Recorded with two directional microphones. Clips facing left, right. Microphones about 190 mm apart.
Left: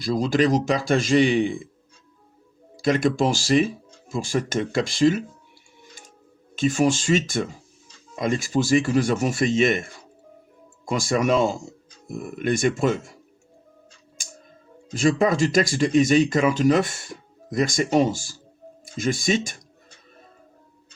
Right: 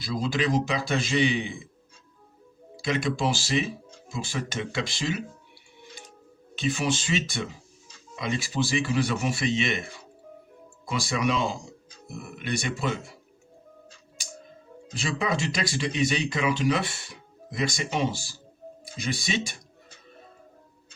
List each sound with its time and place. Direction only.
0.0 s speech: 45° left (ahead or behind)
2.8 s speech: 45° left (ahead or behind)
6.6 s speech: 45° left (ahead or behind)
14.9 s speech: 45° left (ahead or behind)